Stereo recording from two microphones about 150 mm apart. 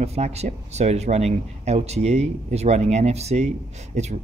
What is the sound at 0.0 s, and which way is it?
Speech, 45° right (ahead or behind).